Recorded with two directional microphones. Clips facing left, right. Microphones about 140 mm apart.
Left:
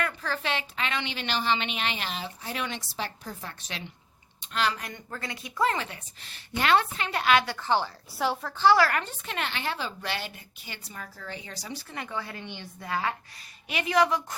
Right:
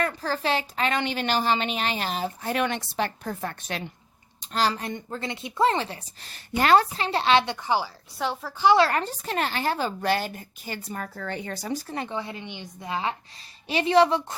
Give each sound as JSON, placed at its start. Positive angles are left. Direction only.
{"t": 0.0, "sound": "a woman's voice", "side_deg": -35}
{"t": 4.4, "sound": "a woman's voice", "side_deg": -35}
{"t": 8.2, "sound": "a woman's voice", "side_deg": 0}
{"t": 8.5, "sound": "a woman's voice", "side_deg": -20}
{"t": 12.0, "sound": "a woman's voice", "side_deg": -20}